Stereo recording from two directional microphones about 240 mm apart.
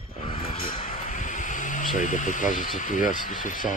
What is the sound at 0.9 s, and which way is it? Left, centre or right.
Speech, left.